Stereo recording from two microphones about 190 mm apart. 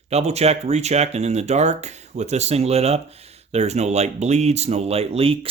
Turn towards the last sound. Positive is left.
turn(degrees=-30)  # may be behind; listen again after turning